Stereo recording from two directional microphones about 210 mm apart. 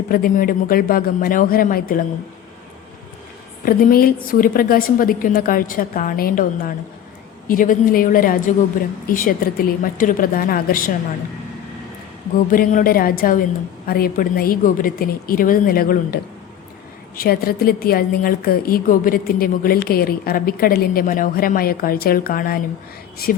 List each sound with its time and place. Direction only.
0.1 s a woman's voice: 45° left (ahead or behind)
3.6 s a woman's voice: 45° left (ahead or behind)
7.4 s a woman's voice: 40° left (ahead or behind)
12.5 s a woman's voice: 40° left (ahead or behind)